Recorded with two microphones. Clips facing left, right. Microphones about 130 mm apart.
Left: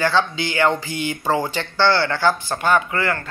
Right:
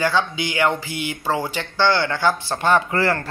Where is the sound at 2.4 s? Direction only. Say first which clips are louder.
Even; 30° right (ahead or behind).